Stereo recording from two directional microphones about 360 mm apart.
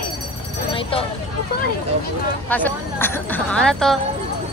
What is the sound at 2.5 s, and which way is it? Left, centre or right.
Speech, centre.